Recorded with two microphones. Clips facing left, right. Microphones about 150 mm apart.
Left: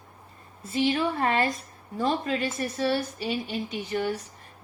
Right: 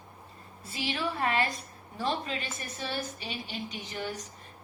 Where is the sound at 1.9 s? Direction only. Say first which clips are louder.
Left 6 dB; 45° left (ahead or behind).